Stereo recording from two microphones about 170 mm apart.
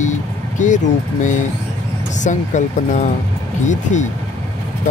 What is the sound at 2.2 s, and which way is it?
Speech, 45° left (ahead or behind).